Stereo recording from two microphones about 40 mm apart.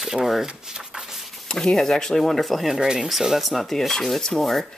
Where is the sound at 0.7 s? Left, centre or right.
Centre.